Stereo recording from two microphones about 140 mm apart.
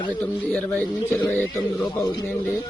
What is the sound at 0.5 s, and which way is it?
Speech, 10° left (ahead or behind).